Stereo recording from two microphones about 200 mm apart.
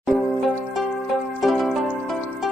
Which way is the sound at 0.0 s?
Centre (ahead or behind).